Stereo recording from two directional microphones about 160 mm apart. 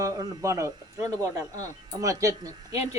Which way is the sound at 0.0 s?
20° right (ahead or behind).